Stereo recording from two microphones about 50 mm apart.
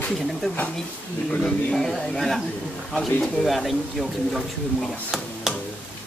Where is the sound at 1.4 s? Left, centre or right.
Centre.